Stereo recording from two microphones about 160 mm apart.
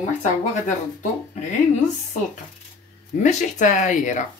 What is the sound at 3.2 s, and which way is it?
Speech, 50° left (ahead or behind).